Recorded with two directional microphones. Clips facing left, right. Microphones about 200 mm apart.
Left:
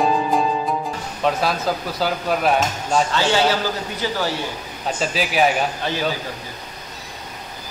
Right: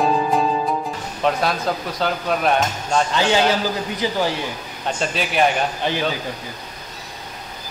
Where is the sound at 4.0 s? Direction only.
15° right (ahead or behind).